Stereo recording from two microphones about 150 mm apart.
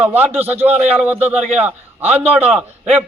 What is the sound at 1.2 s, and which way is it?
A man's voice, 45° right (ahead or behind).